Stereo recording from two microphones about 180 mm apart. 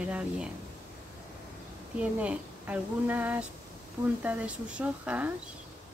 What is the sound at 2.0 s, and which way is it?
A woman's voice, 5° right (ahead or behind).